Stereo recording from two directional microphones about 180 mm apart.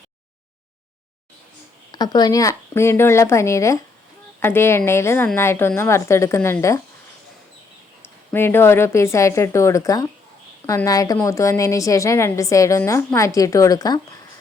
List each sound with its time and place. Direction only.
1.9 s a woman's voice: 20° left (ahead or behind)
8.0 s a woman's voice: 10° left (ahead or behind)